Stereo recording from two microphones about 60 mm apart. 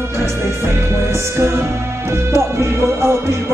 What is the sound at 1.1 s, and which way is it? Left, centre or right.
Music, right.